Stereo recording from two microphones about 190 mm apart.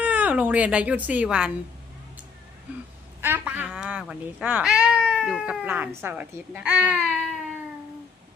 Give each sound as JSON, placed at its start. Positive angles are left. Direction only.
{"t": 0.0, "sound": "speech", "side_deg": -10}
{"t": 3.2, "sound": "speech", "side_deg": -10}